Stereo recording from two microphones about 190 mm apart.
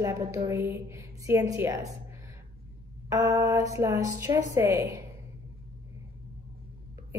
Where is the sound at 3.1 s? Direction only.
15° right (ahead or behind).